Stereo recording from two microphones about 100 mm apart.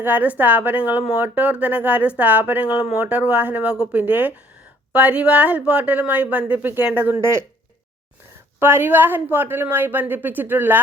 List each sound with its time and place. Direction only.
0.0 s a woman's voice: 20° right (ahead or behind)
8.5 s a woman's voice: 25° right (ahead or behind)